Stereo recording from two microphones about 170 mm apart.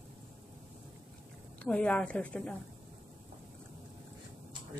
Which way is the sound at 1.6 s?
5° left (ahead or behind).